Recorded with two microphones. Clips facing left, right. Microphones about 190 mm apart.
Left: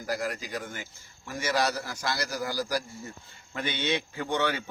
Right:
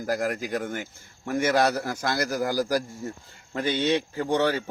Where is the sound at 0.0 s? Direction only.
50° right (ahead or behind).